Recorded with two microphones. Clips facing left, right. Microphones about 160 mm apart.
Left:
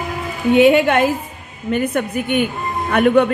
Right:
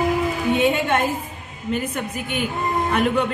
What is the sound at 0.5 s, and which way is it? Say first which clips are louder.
A woman's voice: left 10 dB; 70° left (ahead or behind).